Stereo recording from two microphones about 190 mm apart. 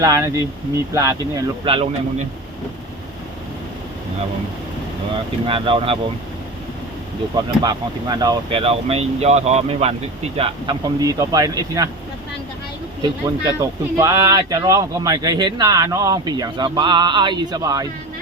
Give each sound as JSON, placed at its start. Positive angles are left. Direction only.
{"t": 0.0, "sound": "speech", "side_deg": -20}
{"t": 1.6, "sound": "speech", "side_deg": -30}
{"t": 5.5, "sound": "speech", "side_deg": -25}
{"t": 7.6, "sound": "speech", "side_deg": -20}
{"t": 11.0, "sound": "speech", "side_deg": -15}
{"t": 13.0, "sound": "speech", "side_deg": -20}